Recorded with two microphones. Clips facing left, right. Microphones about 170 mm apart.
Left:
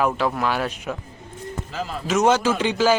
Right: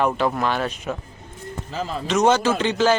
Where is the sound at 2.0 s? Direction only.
5° left (ahead or behind).